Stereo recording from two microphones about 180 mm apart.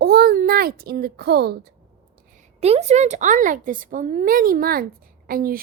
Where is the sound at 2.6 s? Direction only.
35° right (ahead or behind).